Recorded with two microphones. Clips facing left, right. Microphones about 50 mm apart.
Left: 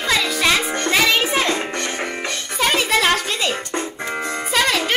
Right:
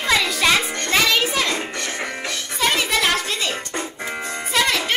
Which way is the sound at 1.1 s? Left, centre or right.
Left.